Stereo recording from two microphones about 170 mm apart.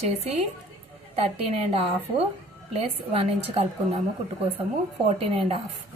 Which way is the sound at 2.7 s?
35° right (ahead or behind).